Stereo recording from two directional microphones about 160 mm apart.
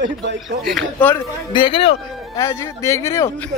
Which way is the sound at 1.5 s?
30° left (ahead or behind).